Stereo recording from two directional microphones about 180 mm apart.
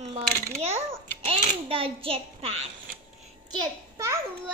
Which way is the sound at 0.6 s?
35° right (ahead or behind).